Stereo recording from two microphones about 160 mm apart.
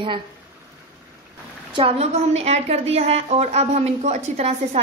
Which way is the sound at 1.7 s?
40° right (ahead or behind).